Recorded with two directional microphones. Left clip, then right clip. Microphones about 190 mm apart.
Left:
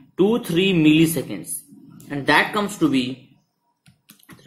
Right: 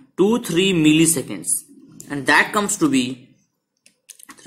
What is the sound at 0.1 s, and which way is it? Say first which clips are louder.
Speech: right 1 dB; 15° right (ahead or behind).